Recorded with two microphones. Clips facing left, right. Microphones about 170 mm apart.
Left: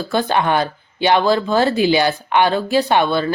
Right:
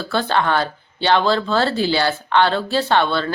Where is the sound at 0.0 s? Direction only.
15° left (ahead or behind).